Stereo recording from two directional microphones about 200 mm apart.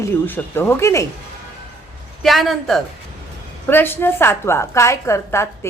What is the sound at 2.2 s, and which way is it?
A woman's voice, centre (ahead or behind).